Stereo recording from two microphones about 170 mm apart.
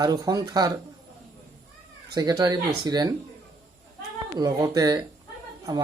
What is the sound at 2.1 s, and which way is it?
Speech, 20° right (ahead or behind).